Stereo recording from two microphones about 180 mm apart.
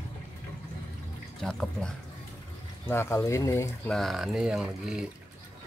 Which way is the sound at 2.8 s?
15° left (ahead or behind).